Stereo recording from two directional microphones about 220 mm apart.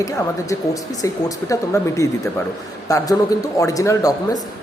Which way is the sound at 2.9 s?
15° left (ahead or behind).